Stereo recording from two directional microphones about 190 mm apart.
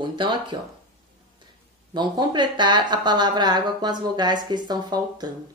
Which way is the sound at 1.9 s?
25° right (ahead or behind).